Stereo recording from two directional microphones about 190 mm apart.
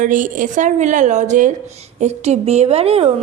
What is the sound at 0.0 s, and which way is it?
A woman's voice, 45° right (ahead or behind).